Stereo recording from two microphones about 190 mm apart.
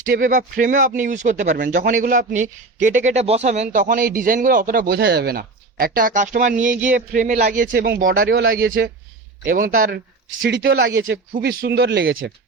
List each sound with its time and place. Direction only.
0.0 s a man's voice: 45° right (ahead or behind)
10.5 s speech: 60° right (ahead or behind)